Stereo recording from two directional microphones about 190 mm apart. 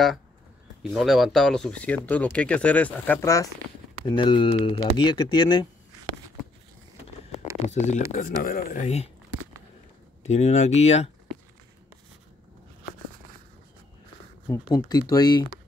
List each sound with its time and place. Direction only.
0.8 s speech: centre (ahead or behind); by 5.7 s 20° left (ahead or behind)
7.6 s speech: 40° left (ahead or behind)
10.2 s speech: 35° left (ahead or behind)
14.7 s speech: 20° left (ahead or behind)